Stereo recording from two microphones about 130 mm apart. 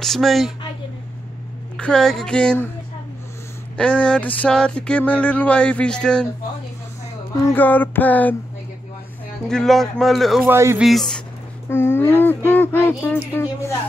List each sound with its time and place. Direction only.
0.0 s speech: centre (ahead or behind)
1.8 s speech: 5° left (ahead or behind)
3.7 s speech: 10° left (ahead or behind)
7.5 s speech: 15° left (ahead or behind)
9.5 s speech: 5° left (ahead or behind)
10.4 s speech: 20° right (ahead or behind)
10.8 s speech: centre (ahead or behind)
11.7 s speech: 20° left (ahead or behind)